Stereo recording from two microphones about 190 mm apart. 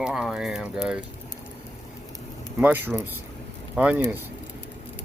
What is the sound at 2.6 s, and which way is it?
Speech, 10° right (ahead or behind).